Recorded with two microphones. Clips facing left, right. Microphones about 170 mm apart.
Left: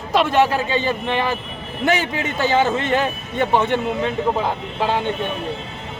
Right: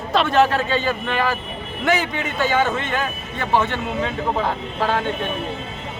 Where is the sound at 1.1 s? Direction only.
20° left (ahead or behind).